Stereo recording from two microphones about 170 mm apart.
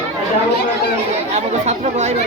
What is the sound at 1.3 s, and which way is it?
Speech, 40° right (ahead or behind).